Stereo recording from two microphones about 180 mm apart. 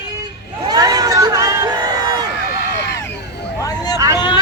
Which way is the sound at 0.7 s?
20° right (ahead or behind).